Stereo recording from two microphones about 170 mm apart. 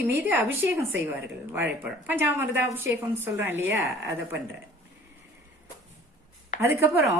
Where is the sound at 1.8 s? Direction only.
10° right (ahead or behind).